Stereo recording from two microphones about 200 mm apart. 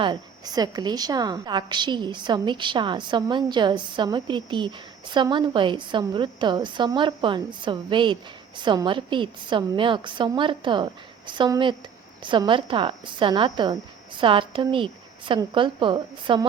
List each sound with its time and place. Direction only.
0.0 s a woman's voice: 20° right (ahead or behind)